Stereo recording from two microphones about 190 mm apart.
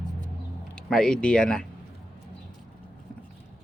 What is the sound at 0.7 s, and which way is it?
Speech, 5° left (ahead or behind).